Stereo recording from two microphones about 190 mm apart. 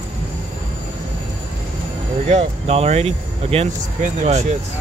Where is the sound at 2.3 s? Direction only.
35° right (ahead or behind).